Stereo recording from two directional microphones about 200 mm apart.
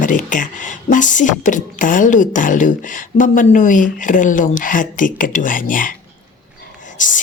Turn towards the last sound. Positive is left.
turn(degrees=40)  # may be behind; listen again after turning